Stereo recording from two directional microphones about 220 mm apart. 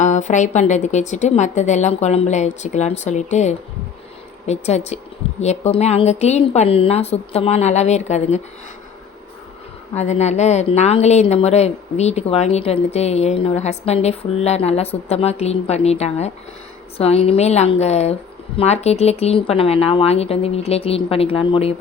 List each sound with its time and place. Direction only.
0.0 s a woman's voice: 35° left (ahead or behind)
9.9 s a woman's voice: 30° left (ahead or behind)